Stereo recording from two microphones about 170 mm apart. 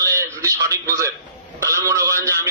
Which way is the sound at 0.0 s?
20° right (ahead or behind).